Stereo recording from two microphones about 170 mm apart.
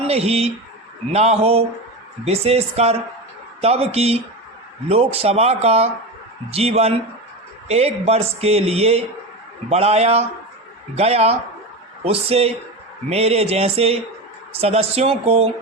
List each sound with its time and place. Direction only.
0.1 s speech: 35° right (ahead or behind)